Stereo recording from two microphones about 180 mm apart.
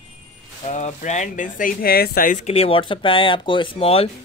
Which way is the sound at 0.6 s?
40° left (ahead or behind).